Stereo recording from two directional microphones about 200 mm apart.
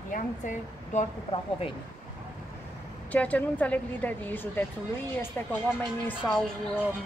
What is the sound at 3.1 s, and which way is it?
A woman's voice, 5° left (ahead or behind).